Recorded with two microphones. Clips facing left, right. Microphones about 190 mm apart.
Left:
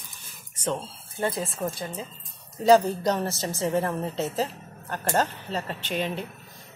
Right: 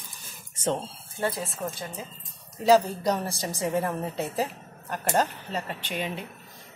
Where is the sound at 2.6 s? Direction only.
5° right (ahead or behind).